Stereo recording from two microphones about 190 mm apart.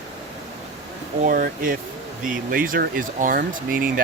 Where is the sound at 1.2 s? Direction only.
45° right (ahead or behind).